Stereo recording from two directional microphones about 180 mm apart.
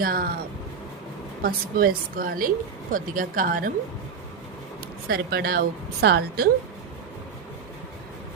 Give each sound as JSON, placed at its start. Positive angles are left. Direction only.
{"t": 0.0, "sound": "a woman's voice", "side_deg": -55}
{"t": 1.4, "sound": "a woman's voice", "side_deg": -55}
{"t": 5.0, "sound": "a woman's voice", "side_deg": -60}